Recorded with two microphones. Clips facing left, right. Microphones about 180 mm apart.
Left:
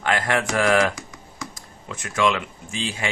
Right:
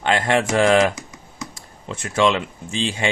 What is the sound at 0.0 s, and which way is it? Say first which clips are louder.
Speech: right 4 dB; 25° right (ahead or behind).